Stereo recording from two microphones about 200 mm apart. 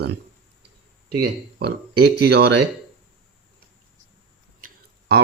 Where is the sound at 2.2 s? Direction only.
55° right (ahead or behind).